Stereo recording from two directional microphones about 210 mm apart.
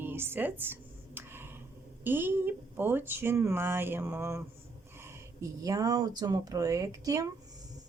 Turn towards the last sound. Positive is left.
turn(degrees=-15)  # may be behind; listen again after turning